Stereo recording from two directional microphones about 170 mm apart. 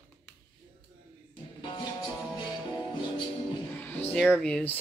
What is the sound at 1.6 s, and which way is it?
Music, 25° left (ahead or behind).